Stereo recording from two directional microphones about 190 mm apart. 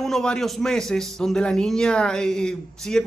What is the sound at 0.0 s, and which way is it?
A man's voice, 5° left (ahead or behind).